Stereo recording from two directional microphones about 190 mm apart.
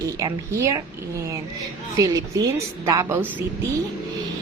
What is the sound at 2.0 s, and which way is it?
A woman's voice, 15° right (ahead or behind).